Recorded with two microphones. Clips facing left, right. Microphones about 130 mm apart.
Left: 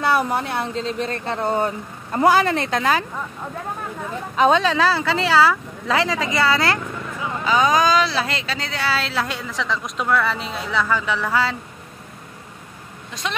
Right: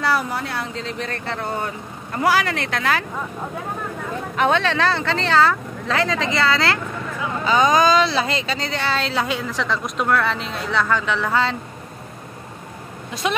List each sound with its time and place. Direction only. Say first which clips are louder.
0.0 s speech: left 2 dB; 20° left (ahead or behind)
4.4 s speech: left 3 dB; 15° left (ahead or behind)
13.1 s speech: right 5 dB; 10° right (ahead or behind)